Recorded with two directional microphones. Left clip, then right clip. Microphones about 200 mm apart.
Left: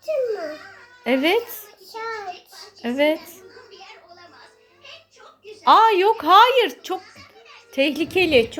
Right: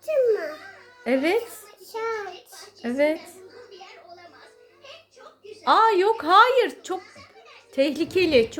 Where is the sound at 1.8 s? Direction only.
10° right (ahead or behind).